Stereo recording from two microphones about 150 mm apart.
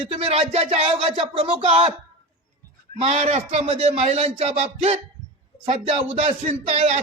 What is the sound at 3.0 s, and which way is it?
A man's voice, 45° right (ahead or behind).